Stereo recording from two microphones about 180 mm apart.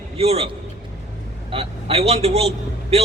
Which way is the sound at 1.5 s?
35° right (ahead or behind).